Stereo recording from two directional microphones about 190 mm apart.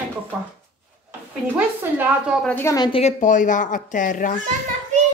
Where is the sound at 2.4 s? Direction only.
10° left (ahead or behind).